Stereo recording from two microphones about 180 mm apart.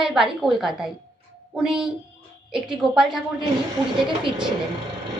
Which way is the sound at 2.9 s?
Centre (ahead or behind).